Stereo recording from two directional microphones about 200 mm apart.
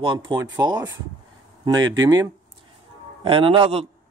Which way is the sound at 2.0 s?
15° right (ahead or behind).